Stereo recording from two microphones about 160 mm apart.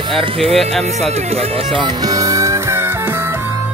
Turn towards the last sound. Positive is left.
turn(degrees=-15)  # may be behind; listen again after turning